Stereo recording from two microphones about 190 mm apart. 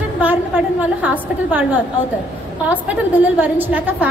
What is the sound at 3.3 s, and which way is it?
Speech, 10° right (ahead or behind).